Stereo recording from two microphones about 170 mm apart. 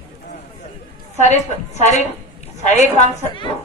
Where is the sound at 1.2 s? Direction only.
45° left (ahead or behind).